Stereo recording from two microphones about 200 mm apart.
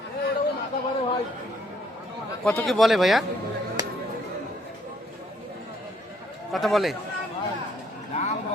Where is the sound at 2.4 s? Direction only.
5° left (ahead or behind).